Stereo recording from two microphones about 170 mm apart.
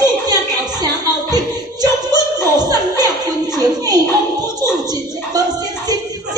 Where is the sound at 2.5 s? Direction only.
25° right (ahead or behind).